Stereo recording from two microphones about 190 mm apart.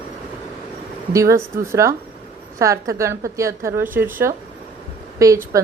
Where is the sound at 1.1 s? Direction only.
15° right (ahead or behind).